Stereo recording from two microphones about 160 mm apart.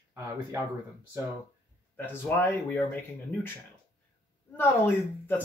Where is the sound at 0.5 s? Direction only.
20° right (ahead or behind).